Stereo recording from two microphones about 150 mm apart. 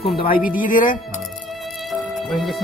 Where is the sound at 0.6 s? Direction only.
65° left (ahead or behind).